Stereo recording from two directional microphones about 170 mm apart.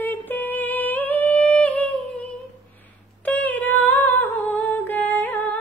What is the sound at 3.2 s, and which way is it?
Humming, 10° left (ahead or behind).